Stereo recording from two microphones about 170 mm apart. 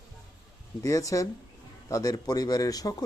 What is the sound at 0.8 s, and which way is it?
A man's voice, 20° left (ahead or behind).